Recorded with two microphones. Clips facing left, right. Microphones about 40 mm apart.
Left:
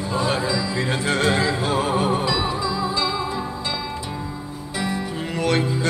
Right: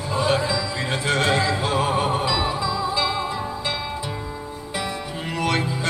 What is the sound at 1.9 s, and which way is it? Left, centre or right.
Music, centre.